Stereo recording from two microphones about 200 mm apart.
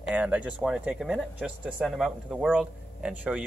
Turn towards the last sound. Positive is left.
turn(degrees=-5)  # may be behind; listen again after turning